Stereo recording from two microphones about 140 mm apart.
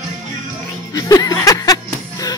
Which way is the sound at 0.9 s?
25° left (ahead or behind).